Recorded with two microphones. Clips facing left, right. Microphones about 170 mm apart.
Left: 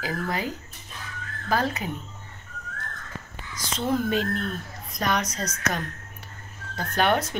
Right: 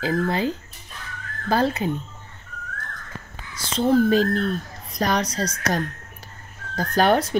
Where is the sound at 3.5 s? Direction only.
30° right (ahead or behind).